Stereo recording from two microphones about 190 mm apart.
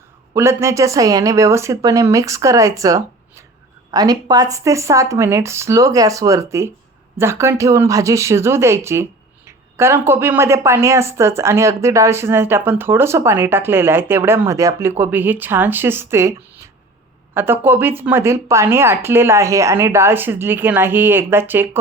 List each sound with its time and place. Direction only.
0.3 s a woman's voice: 15° right (ahead or behind)